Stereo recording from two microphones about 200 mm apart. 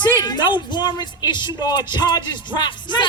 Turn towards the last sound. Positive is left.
turn(degrees=25)  # may be behind; listen again after turning